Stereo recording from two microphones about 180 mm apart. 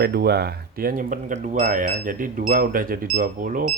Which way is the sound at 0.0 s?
60° right (ahead or behind).